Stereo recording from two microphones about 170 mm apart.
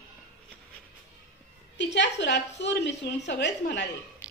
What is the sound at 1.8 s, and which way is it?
A woman's voice, 90° left.